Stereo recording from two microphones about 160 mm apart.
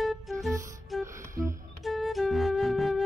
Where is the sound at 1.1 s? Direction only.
20° right (ahead or behind).